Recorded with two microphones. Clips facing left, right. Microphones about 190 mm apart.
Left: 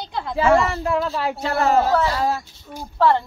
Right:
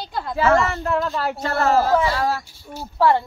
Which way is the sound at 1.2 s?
15° left (ahead or behind).